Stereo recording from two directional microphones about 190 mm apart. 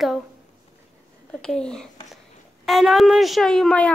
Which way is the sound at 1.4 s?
5° left (ahead or behind).